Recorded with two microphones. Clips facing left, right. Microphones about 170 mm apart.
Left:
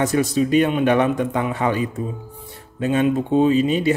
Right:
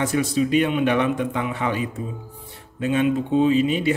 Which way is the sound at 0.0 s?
40° left (ahead or behind).